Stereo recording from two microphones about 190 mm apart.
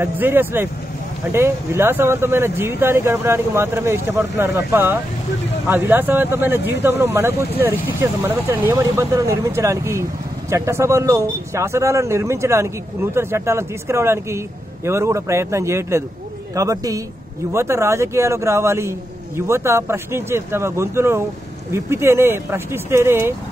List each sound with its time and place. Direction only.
0.0 s speech: 10° right (ahead or behind)